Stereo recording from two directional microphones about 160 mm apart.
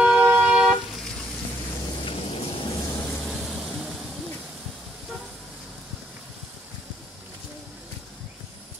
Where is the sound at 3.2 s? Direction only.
5° right (ahead or behind).